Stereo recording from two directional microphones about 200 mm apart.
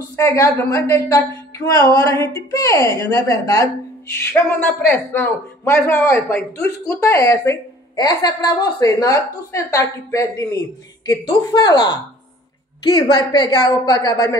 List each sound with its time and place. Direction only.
0.1 s a woman's voice: 15° left (ahead or behind)